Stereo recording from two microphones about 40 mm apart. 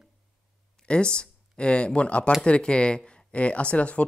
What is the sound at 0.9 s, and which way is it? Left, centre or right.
Speech, left.